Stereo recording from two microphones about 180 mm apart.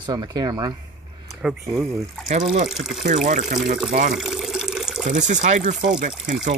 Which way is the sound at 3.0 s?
45° right (ahead or behind).